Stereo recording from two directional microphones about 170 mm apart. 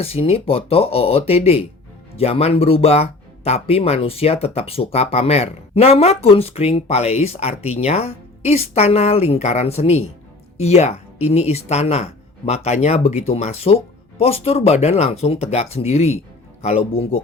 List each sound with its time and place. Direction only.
0.0 s speech: 35° left (ahead or behind)